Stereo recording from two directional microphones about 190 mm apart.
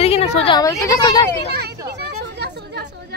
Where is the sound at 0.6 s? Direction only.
15° left (ahead or behind).